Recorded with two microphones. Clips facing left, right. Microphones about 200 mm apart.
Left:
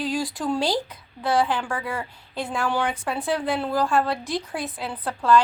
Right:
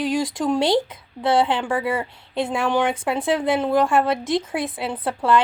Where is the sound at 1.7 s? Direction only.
5° right (ahead or behind).